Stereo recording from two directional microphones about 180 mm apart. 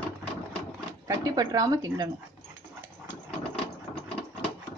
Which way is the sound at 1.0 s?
20° right (ahead or behind).